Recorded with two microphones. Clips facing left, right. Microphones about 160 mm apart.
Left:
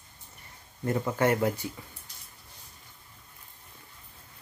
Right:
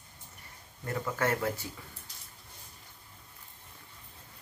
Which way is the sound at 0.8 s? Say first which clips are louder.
Left 6 dB; 20° left (ahead or behind).